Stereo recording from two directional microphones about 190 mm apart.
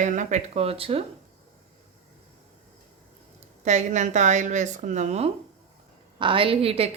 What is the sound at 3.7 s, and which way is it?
A woman's voice, 40° right (ahead or behind).